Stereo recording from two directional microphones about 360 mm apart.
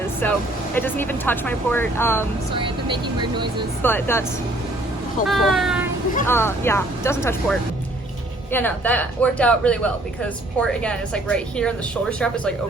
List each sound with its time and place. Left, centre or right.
0.2 s speech: centre
2.6 s speech: centre
3.8 s speech: centre
5.3 s speech: centre
8.5 s speech: centre